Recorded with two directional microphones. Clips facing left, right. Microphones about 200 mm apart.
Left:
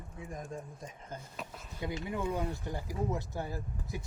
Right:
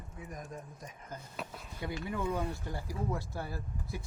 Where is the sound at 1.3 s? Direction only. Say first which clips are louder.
Right 1 dB; centre (ahead or behind).